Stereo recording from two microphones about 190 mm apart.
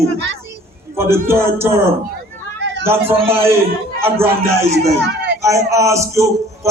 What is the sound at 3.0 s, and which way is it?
Speech, 30° right (ahead or behind).